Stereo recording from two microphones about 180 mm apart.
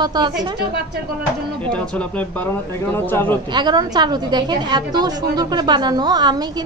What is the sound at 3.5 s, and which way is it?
A woman's voice, 25° right (ahead or behind).